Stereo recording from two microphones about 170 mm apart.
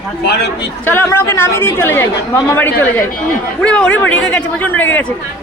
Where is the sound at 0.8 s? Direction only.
15° left (ahead or behind).